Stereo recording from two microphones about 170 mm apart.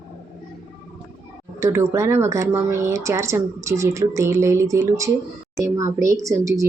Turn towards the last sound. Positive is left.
turn(degrees=-20)  # may be behind; listen again after turning